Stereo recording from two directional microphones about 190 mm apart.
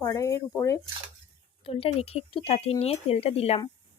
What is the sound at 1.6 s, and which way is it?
Speech, 30° left (ahead or behind).